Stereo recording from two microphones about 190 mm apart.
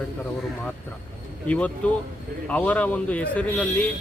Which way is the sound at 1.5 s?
5° left (ahead or behind).